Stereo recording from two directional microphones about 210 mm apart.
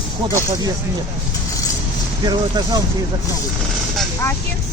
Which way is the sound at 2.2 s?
20° right (ahead or behind).